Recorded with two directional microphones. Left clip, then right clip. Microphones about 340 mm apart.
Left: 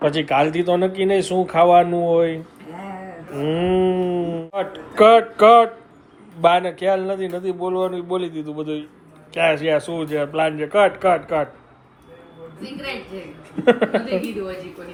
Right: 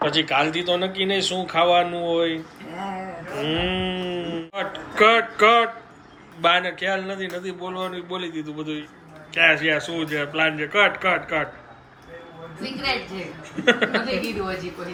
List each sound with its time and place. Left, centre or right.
0.0 s speech: centre
13.7 s speech: centre